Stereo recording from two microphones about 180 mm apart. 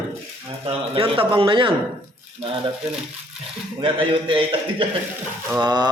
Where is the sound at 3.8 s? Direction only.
30° right (ahead or behind).